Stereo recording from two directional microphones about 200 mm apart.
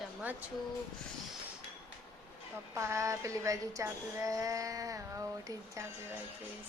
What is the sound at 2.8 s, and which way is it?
Speech, 15° right (ahead or behind).